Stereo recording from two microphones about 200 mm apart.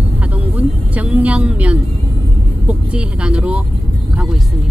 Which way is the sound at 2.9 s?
5° right (ahead or behind).